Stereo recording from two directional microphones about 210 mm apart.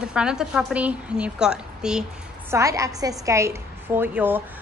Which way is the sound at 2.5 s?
15° right (ahead or behind).